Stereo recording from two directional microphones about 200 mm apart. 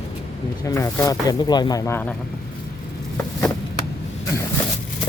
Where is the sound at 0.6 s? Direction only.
15° left (ahead or behind).